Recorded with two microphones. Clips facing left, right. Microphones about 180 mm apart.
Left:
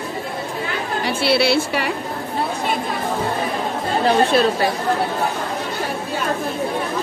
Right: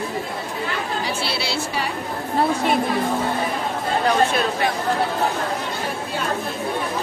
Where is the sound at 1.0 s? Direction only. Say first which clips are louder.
Left 8 dB; 60° left (ahead or behind).